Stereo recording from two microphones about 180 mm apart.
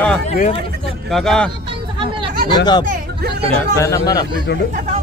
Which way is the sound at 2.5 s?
25° left (ahead or behind).